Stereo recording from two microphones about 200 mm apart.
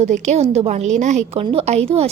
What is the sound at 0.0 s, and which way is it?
A woman's voice, 35° right (ahead or behind).